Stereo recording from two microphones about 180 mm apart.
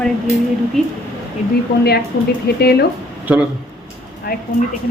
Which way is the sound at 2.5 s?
65° left (ahead or behind).